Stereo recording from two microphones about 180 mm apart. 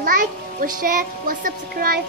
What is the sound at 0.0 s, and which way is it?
A child's voice, 50° right (ahead or behind).